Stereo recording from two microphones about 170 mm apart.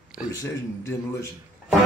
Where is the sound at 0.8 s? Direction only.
15° left (ahead or behind).